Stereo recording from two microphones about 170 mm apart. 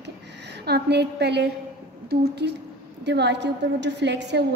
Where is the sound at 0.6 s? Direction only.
75° right (ahead or behind).